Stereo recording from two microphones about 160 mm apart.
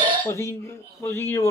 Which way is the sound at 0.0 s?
30° right (ahead or behind).